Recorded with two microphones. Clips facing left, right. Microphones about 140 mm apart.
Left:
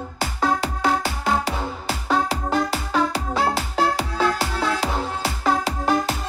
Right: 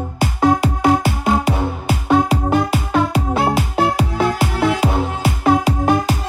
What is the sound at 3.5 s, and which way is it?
Music, 55° right (ahead or behind).